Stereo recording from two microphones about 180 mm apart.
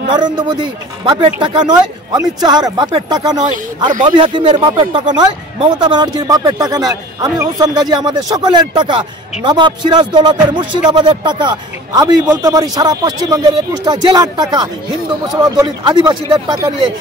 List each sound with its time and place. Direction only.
0.1 s speech: 25° right (ahead or behind)